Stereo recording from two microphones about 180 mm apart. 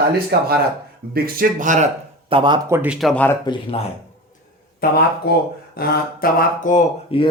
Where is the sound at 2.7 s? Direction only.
10° right (ahead or behind).